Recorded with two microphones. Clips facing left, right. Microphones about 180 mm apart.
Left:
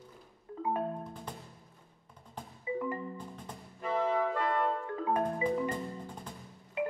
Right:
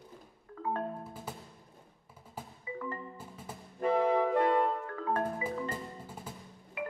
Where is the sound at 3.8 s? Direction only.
55° right (ahead or behind).